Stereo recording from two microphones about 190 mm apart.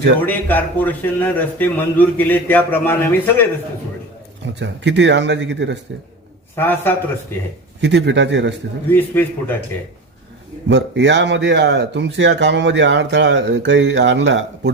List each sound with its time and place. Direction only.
0.3 s a man's voice: 10° left (ahead or behind)
4.6 s speech: 70° right (ahead or behind)
6.6 s a man's voice: 10° left (ahead or behind)
7.8 s speech: 65° right (ahead or behind)
8.9 s a man's voice: 10° left (ahead or behind)
10.7 s speech: 65° right (ahead or behind)